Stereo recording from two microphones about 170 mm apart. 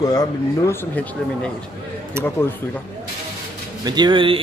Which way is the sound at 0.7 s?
10° left (ahead or behind).